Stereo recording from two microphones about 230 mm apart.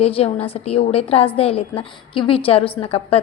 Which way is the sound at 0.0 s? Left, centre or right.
Left.